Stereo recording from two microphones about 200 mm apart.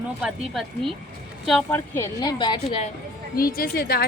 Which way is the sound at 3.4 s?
45° left (ahead or behind).